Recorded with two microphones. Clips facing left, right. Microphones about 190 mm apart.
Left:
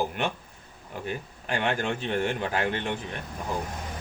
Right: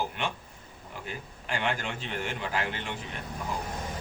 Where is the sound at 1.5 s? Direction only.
40° left (ahead or behind).